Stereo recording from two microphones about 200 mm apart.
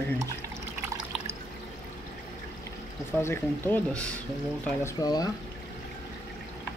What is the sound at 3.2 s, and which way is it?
Speech, 10° left (ahead or behind).